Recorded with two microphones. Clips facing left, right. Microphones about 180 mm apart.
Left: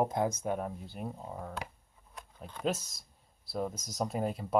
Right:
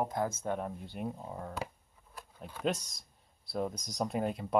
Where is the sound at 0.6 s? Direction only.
Centre (ahead or behind).